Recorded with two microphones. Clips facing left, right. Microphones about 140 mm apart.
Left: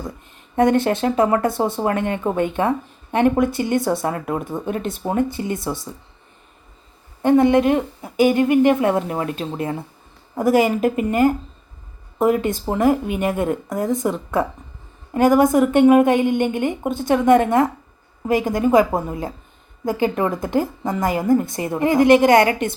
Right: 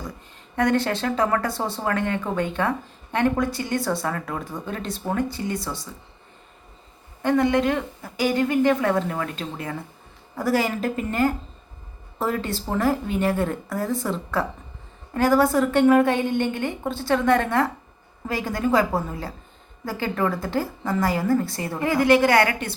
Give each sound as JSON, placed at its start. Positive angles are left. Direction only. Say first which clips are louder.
{"t": 0.5, "sound": "speech", "louder": "left 5 dB", "side_deg": 20}
{"t": 7.2, "sound": "a woman's voice", "louder": "left 6 dB", "side_deg": 20}